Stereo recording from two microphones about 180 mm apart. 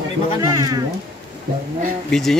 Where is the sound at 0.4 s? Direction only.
20° right (ahead or behind).